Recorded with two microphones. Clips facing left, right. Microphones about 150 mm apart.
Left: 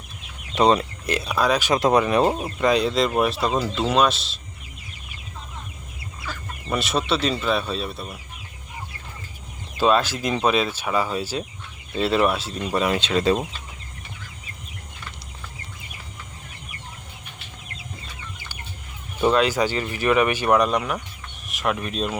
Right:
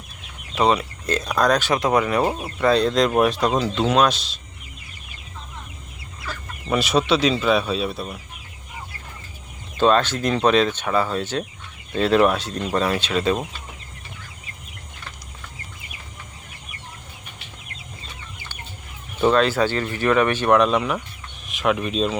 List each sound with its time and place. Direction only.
1.0 s speech: 10° left (ahead or behind)
1.7 s speech: 20° left (ahead or behind); by 4.4 s centre (ahead or behind)
6.7 s speech: centre (ahead or behind)
9.7 s speech: 10° left (ahead or behind); by 13.3 s 30° left (ahead or behind)
19.2 s speech: 10° left (ahead or behind)